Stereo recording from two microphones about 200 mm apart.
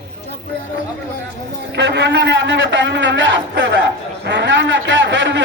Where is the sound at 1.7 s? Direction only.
60° right (ahead or behind).